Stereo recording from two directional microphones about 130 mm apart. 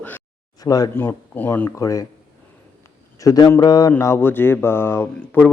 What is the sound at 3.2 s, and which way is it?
A man's voice, 30° left (ahead or behind).